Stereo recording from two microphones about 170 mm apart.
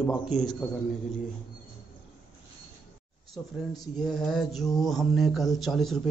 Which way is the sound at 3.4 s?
5° right (ahead or behind).